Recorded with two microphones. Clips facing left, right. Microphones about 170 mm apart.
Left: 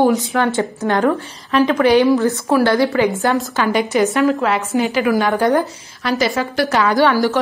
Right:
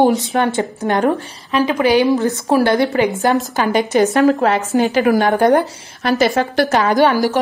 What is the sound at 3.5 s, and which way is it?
A woman's voice, 40° right (ahead or behind).